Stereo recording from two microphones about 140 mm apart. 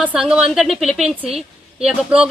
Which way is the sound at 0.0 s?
10° right (ahead or behind).